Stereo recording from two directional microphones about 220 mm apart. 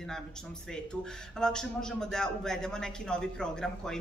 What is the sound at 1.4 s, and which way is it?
Speech, 5° left (ahead or behind).